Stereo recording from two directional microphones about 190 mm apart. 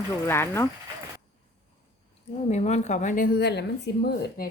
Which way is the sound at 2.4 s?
35° left (ahead or behind).